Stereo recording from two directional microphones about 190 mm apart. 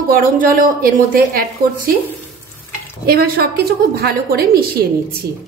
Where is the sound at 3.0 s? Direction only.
55° right (ahead or behind).